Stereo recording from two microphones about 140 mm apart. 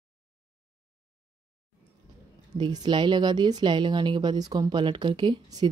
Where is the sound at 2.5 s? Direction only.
30° right (ahead or behind).